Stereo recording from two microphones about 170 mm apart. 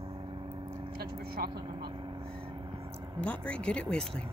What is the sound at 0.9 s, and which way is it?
Speech, 65° right (ahead or behind).